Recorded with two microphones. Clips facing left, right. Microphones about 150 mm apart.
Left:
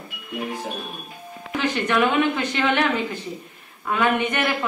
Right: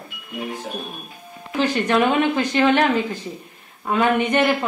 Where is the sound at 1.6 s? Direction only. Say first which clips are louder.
Right 3 dB; 35° right (ahead or behind).